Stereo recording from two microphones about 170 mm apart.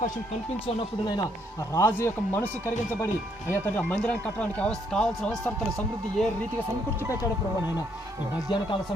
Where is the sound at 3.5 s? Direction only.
10° left (ahead or behind).